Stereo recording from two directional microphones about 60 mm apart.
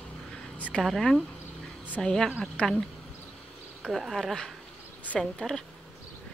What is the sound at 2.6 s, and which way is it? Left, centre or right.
Speech, left.